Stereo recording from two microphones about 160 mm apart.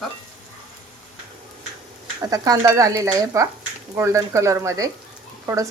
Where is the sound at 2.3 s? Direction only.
20° right (ahead or behind).